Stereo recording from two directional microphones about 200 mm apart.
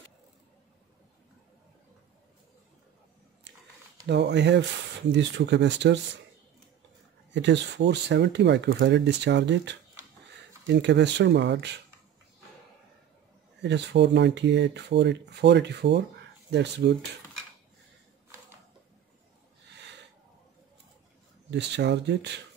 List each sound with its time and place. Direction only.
4.0 s speech: 60° right (ahead or behind)
7.3 s speech: 60° right (ahead or behind)
13.6 s speech: 60° right (ahead or behind)
21.5 s speech: 60° right (ahead or behind)